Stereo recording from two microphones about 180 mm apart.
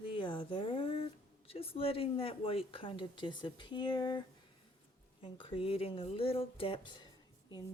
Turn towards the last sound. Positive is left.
turn(degrees=25)  # may be behind; listen again after turning